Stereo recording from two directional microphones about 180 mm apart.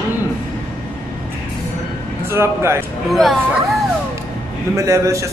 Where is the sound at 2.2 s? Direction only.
15° right (ahead or behind).